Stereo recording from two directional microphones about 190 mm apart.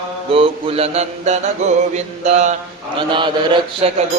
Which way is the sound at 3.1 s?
25° right (ahead or behind).